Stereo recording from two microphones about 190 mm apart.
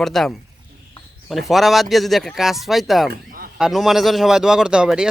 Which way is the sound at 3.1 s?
50° right (ahead or behind).